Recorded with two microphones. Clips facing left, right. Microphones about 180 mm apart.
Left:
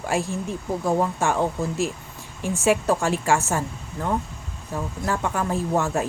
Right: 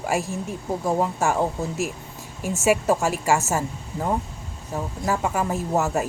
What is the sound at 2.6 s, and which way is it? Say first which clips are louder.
A woman's voice: right 1 dB; 5° right (ahead or behind).